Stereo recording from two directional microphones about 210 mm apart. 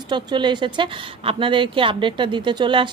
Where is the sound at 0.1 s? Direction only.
20° right (ahead or behind).